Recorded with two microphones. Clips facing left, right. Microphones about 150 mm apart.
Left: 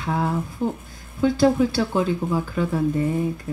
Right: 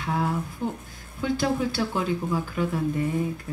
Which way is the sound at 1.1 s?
35° left (ahead or behind).